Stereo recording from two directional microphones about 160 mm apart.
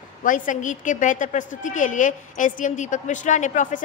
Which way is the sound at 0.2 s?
55° left (ahead or behind).